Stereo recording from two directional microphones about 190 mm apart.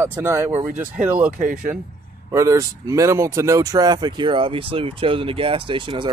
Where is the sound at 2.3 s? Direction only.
15° right (ahead or behind).